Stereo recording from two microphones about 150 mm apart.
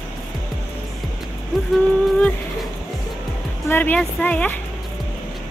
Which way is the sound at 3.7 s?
10° left (ahead or behind).